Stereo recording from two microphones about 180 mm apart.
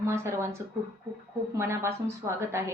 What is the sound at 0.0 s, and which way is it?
Speech, 15° right (ahead or behind).